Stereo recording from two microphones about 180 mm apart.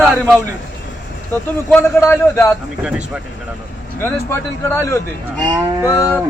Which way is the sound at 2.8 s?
5° right (ahead or behind).